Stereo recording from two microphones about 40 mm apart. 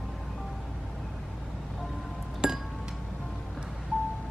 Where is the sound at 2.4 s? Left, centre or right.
Right.